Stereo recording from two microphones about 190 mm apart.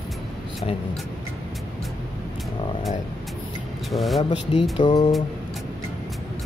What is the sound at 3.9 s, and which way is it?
Speech, centre (ahead or behind).